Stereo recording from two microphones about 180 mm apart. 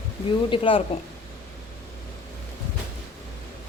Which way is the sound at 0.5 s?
30° left (ahead or behind).